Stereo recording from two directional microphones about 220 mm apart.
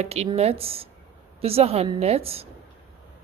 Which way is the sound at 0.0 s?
30° right (ahead or behind).